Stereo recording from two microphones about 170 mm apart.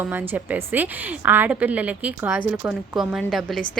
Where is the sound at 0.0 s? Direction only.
10° right (ahead or behind).